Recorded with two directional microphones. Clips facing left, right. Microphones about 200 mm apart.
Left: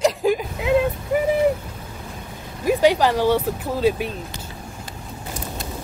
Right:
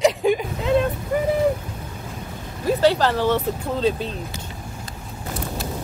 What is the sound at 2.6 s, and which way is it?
Speech, 15° left (ahead or behind).